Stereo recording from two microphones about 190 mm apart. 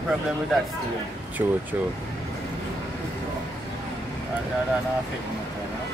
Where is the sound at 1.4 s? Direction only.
15° right (ahead or behind).